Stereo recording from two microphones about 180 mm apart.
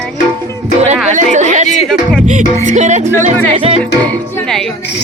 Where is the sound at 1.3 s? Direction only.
40° right (ahead or behind).